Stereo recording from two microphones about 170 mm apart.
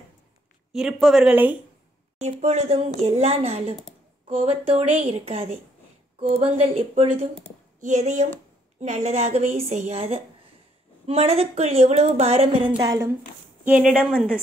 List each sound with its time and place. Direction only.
0.7 s speech: centre (ahead or behind)
2.1 s a woman's voice: 40° right (ahead or behind)
12.8 s a woman's voice: 20° right (ahead or behind)
13.7 s speech: 5° right (ahead or behind)